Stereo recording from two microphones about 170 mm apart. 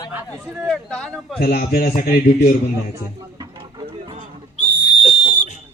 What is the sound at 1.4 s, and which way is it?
A man's voice, 65° left (ahead or behind).